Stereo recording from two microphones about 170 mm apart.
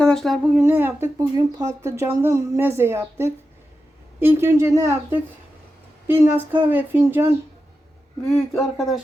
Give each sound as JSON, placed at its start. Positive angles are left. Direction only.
{"t": 0.0, "sound": "speech", "side_deg": 5}
{"t": 0.6, "sound": "speech", "side_deg": -15}
{"t": 8.3, "sound": "speech", "side_deg": 0}